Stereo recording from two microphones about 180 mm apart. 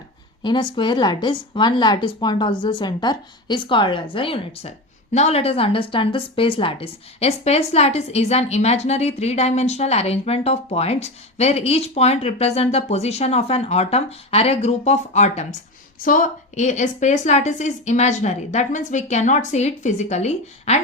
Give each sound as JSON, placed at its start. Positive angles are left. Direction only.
{"t": 0.4, "sound": "a woman's voice", "side_deg": 25}